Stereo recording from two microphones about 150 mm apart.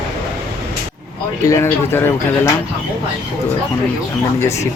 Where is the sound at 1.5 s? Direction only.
15° left (ahead or behind).